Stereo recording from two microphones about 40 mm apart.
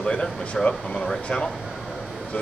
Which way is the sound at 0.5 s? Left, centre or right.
Centre.